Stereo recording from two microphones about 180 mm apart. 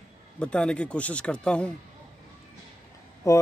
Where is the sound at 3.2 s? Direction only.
15° left (ahead or behind).